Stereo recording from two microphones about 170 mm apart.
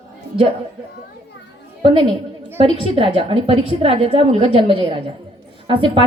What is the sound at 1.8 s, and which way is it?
A woman's voice, 30° right (ahead or behind).